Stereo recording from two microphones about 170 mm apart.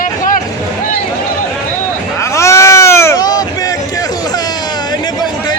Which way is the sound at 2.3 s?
15° left (ahead or behind).